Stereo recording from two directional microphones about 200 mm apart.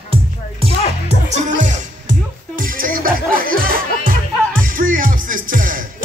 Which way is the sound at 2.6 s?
45° right (ahead or behind).